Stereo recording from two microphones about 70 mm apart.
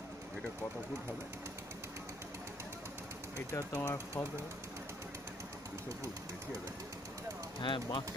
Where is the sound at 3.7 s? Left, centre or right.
Left.